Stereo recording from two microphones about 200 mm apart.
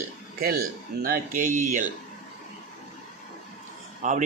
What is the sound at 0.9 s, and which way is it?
Speech, 45° right (ahead or behind).